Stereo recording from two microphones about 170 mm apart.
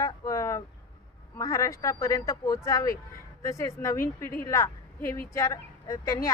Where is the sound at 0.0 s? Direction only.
20° left (ahead or behind).